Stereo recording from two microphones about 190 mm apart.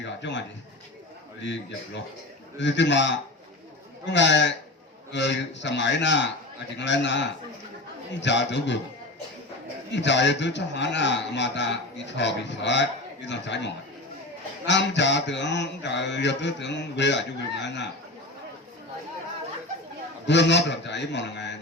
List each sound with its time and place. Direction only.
0.0 s a man's voice: 70° left (ahead or behind)
9.9 s a man's voice: 70° left (ahead or behind)
14.7 s a man's voice: 70° left (ahead or behind)
20.2 s a man's voice: 65° left (ahead or behind)